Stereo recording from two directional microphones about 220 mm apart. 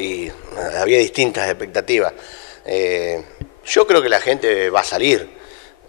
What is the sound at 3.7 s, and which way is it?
A man's voice, 15° left (ahead or behind).